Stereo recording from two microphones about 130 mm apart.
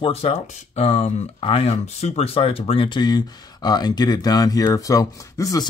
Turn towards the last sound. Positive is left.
turn(degrees=25)  # may be behind; listen again after turning